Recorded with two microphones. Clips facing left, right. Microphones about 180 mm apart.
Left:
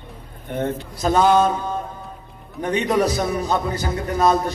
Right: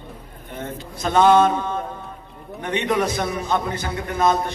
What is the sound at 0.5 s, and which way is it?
Speech, 60° left (ahead or behind).